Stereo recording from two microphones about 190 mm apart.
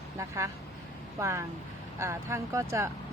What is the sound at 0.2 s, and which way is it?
Speech, 15° right (ahead or behind).